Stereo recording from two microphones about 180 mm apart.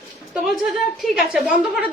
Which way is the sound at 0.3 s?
Centre (ahead or behind).